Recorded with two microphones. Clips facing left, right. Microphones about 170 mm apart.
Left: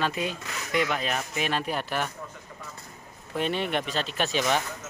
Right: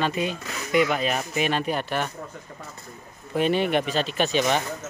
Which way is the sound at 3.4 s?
5° right (ahead or behind).